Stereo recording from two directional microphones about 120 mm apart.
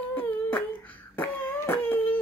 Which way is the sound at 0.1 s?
15° left (ahead or behind).